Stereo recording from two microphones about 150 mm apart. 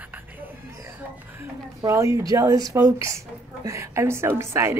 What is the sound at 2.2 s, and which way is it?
A woman's voice, 25° right (ahead or behind).